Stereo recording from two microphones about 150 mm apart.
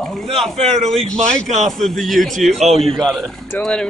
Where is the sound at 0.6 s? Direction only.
40° right (ahead or behind).